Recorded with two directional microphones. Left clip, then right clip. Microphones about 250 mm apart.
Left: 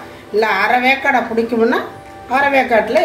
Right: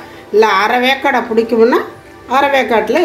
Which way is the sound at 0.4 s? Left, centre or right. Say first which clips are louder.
Right 3 dB; right.